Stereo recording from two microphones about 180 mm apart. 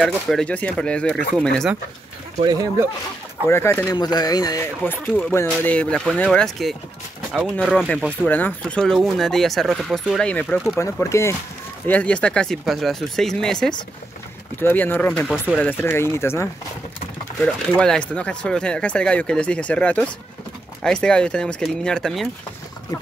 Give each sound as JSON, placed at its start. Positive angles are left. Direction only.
{"t": 0.0, "sound": "speech", "side_deg": 5}
{"t": 2.4, "sound": "speech", "side_deg": -20}
{"t": 3.4, "sound": "speech", "side_deg": 15}
{"t": 10.8, "sound": "speech", "side_deg": 15}
{"t": 15.3, "sound": "speech", "side_deg": -5}
{"t": 15.6, "sound": "speech", "side_deg": 15}